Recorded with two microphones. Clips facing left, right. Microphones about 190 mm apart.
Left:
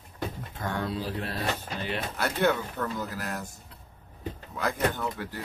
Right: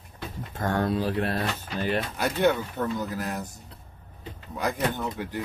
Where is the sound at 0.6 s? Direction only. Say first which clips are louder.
Right 6 dB; 45° right (ahead or behind).